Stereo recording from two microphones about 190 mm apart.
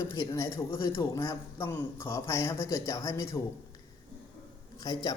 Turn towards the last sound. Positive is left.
turn(degrees=20)  # may be behind; listen again after turning